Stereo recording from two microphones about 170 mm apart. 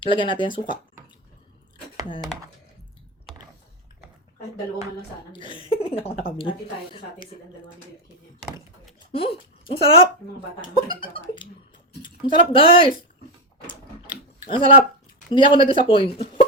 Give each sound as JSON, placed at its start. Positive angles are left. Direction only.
{"t": 0.0, "sound": "speech", "side_deg": 30}
{"t": 5.4, "sound": "speech", "side_deg": 30}
{"t": 9.1, "sound": "speech", "side_deg": 35}
{"t": 14.5, "sound": "speech", "side_deg": 30}